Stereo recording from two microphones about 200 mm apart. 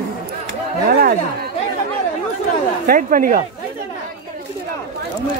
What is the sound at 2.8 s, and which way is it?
Speech, 40° right (ahead or behind).